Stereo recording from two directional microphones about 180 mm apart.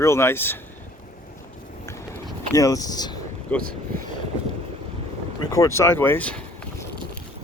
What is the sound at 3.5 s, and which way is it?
Speech, 10° left (ahead or behind).